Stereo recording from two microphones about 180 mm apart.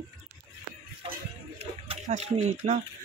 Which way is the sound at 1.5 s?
35° right (ahead or behind).